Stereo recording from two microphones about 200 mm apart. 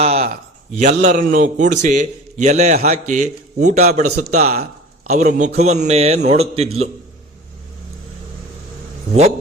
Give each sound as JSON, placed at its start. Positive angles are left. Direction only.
{"t": 0.0, "sound": "a man's voice", "side_deg": -30}